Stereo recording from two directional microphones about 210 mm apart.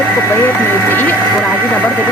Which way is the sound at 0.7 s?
10° left (ahead or behind).